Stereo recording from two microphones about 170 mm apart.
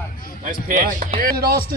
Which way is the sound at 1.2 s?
65° right (ahead or behind).